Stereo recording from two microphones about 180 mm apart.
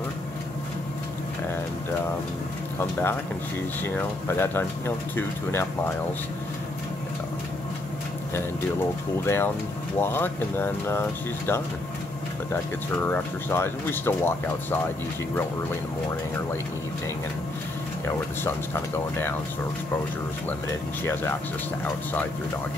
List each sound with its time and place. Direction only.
2.8 s speech: 15° left (ahead or behind)
9.2 s speech: 15° left (ahead or behind)
12.9 s speech: 10° left (ahead or behind)
21.0 s speech: 10° left (ahead or behind)